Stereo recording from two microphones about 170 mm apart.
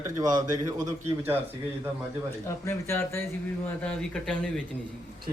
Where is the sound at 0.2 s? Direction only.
20° right (ahead or behind).